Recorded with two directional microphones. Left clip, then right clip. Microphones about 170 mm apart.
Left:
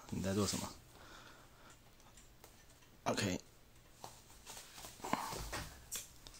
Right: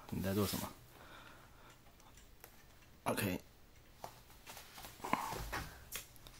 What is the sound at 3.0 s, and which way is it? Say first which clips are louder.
Speech: left 1 dB; 5° left (ahead or behind).